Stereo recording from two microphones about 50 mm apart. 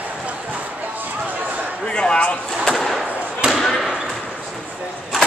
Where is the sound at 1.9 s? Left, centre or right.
Centre.